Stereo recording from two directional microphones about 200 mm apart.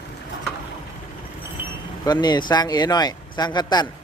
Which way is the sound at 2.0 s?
20° left (ahead or behind).